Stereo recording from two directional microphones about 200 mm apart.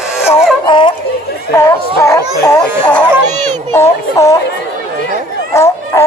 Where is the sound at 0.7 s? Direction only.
25° left (ahead or behind).